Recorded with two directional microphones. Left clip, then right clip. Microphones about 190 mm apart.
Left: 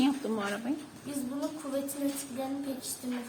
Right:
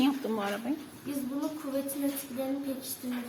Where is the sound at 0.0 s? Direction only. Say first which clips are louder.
Right 1 dB; centre (ahead or behind).